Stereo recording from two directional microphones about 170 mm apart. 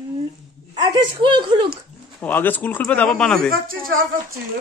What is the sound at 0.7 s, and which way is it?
Speech, 25° right (ahead or behind).